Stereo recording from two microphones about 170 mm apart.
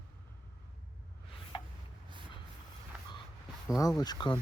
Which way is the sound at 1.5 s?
30° left (ahead or behind).